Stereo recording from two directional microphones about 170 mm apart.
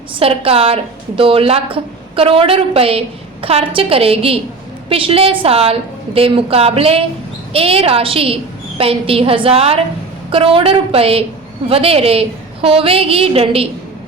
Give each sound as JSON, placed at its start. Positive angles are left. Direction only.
{"t": 0.1, "sound": "a woman's voice", "side_deg": -35}